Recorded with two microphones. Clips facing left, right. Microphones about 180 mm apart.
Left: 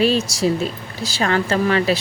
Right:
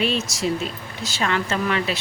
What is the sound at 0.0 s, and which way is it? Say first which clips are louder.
A woman's voice: left 6 dB; 35° left (ahead or behind).